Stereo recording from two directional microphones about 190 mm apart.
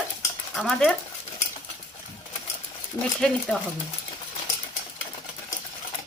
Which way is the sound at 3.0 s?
25° left (ahead or behind).